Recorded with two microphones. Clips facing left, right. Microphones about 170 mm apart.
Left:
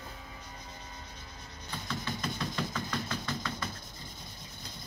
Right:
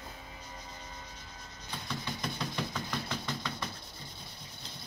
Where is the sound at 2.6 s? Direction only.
15° right (ahead or behind).